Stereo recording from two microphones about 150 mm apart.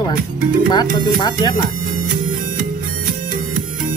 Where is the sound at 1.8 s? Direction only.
65° right (ahead or behind).